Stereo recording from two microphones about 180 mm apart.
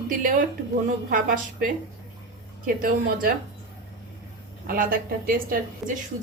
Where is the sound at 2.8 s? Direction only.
50° right (ahead or behind).